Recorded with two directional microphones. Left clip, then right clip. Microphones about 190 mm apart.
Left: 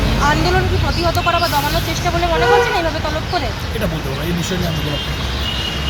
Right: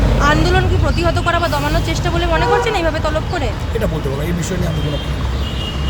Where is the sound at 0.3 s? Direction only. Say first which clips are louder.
Right 1 dB; 40° right (ahead or behind).